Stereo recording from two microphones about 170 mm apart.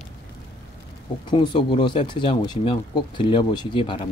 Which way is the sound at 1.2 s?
30° left (ahead or behind).